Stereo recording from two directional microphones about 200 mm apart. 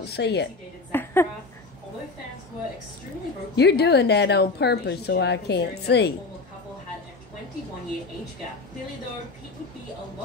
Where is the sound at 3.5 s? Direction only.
55° left (ahead or behind).